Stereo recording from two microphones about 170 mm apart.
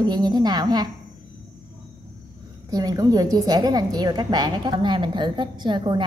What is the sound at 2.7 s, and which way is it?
A woman's voice, 20° right (ahead or behind).